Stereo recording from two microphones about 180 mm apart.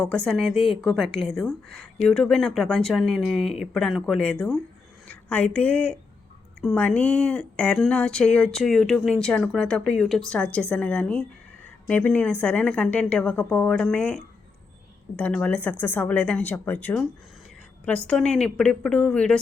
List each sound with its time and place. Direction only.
0.0 s a woman's voice: 5° left (ahead or behind)